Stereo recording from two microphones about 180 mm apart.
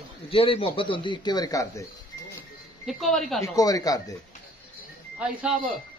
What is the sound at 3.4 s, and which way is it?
Speech, 20° left (ahead or behind).